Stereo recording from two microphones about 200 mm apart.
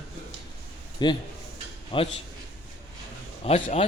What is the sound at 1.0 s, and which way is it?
Speech, 20° left (ahead or behind).